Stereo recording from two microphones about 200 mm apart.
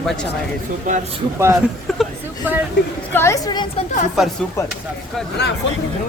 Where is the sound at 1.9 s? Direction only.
Centre (ahead or behind).